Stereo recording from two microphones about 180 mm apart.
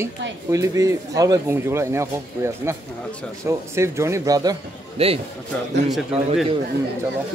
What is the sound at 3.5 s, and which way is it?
Speech, 15° right (ahead or behind).